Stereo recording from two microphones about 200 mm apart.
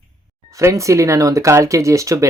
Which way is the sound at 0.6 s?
15° right (ahead or behind).